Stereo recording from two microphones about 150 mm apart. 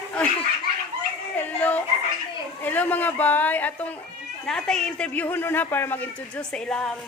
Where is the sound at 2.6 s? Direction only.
10° left (ahead or behind).